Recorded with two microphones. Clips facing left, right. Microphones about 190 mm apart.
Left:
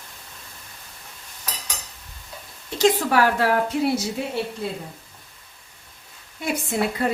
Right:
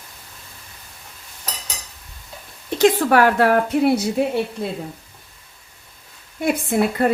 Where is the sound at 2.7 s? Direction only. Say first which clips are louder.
Right 4 dB; 60° right (ahead or behind).